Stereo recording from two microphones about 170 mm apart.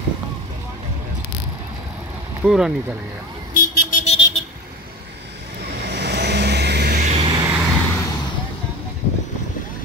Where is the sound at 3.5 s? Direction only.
60° left (ahead or behind).